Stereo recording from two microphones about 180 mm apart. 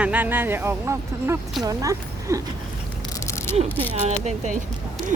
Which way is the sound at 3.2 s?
15° left (ahead or behind).